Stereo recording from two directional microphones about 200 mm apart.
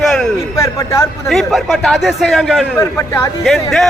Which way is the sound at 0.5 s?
15° left (ahead or behind).